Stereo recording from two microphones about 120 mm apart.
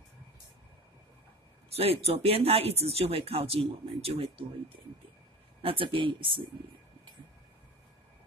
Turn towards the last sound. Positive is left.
turn(degrees=-45)  # may be behind; listen again after turning